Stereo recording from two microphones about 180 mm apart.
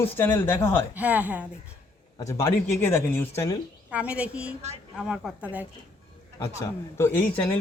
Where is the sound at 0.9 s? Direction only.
10° right (ahead or behind).